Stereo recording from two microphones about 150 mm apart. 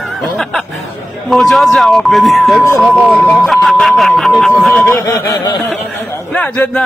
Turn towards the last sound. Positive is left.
turn(degrees=10)  # may be behind; listen again after turning